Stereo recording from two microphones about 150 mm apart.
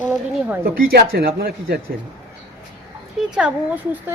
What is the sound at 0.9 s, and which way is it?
Speech, 90° right.